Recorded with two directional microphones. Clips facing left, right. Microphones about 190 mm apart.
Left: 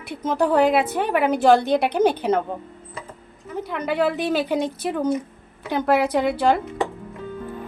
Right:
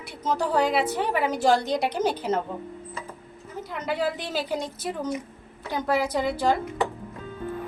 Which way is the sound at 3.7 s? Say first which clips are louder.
Left 5 dB; 60° left (ahead or behind).